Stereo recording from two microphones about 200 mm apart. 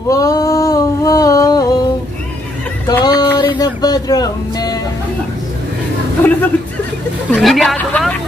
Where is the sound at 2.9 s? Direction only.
20° left (ahead or behind).